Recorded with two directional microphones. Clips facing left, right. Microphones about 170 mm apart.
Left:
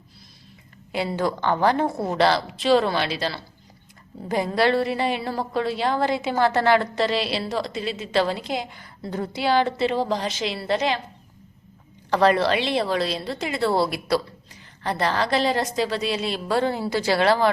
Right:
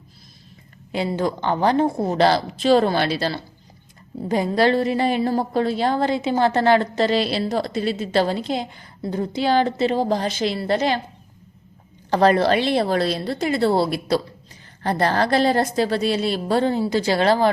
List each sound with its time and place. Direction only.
0.9 s a woman's voice: 20° right (ahead or behind)
2.1 s a woman's voice: 40° right (ahead or behind)
6.9 s a woman's voice: 40° right (ahead or behind); by 9.3 s 20° right (ahead or behind)
9.5 s a woman's voice: 40° right (ahead or behind)
12.1 s a woman's voice: 40° right (ahead or behind)
13.6 s a woman's voice: 30° right (ahead or behind)
14.8 s a woman's voice: 45° right (ahead or behind)
16.2 s a woman's voice: 30° right (ahead or behind)
17.2 s a woman's voice: 40° right (ahead or behind)